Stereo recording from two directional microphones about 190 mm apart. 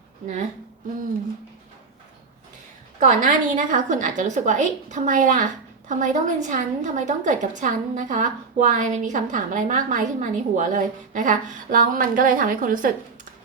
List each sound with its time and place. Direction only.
3.0 s a woman's voice: 45° right (ahead or behind)